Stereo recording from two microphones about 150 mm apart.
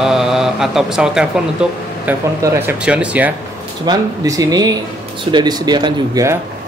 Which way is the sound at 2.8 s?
10° right (ahead or behind).